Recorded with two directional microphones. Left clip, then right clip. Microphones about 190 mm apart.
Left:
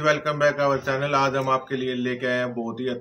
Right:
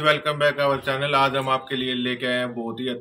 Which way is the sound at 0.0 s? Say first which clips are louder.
Right 1 dB; 5° left (ahead or behind).